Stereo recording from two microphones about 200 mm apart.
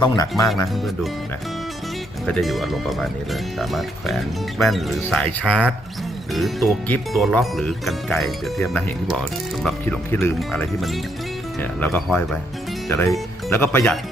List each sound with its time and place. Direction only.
0.0 s speech: 20° left (ahead or behind)
2.2 s speech: centre (ahead or behind)